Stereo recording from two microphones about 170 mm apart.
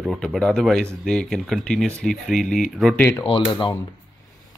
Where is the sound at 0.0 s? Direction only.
Centre (ahead or behind).